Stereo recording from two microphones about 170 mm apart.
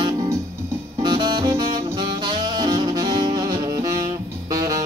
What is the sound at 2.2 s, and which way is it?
Saxophone, 25° right (ahead or behind).